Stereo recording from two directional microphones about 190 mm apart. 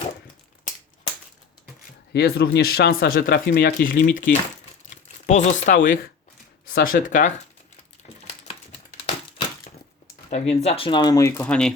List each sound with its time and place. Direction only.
2.1 s speech: 60° left (ahead or behind)
5.2 s speech: 35° left (ahead or behind)
10.2 s speech: 35° left (ahead or behind); by 11.7 s 5° left (ahead or behind)